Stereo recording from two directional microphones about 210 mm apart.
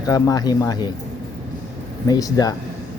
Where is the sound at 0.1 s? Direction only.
15° left (ahead or behind).